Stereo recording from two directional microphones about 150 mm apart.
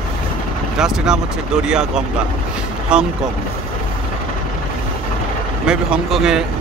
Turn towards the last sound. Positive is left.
turn(degrees=-5)  # may be behind; listen again after turning